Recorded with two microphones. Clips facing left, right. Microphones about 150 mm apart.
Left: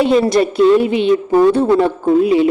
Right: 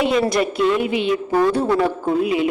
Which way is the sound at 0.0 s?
30° left (ahead or behind).